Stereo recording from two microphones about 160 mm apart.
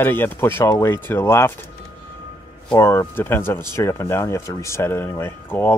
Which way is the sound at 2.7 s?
15° left (ahead or behind).